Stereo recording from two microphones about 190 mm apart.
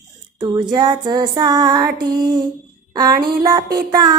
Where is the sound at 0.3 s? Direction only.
20° right (ahead or behind).